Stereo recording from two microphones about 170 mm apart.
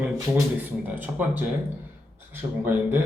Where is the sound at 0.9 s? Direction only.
10° right (ahead or behind).